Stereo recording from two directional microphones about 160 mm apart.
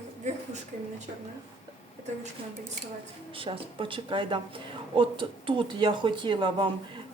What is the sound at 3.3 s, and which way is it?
A woman's voice, 35° right (ahead or behind).